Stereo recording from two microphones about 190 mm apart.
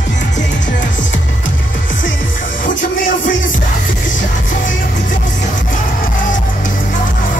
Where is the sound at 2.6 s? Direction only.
45° left (ahead or behind).